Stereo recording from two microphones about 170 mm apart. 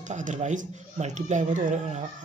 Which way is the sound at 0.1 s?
45° right (ahead or behind).